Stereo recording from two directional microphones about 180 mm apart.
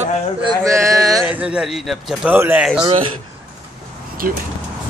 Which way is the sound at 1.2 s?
5° right (ahead or behind).